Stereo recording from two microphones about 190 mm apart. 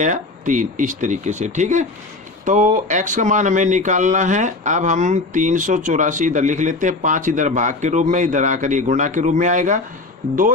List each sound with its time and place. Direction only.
0.0 s speech: 40° right (ahead or behind)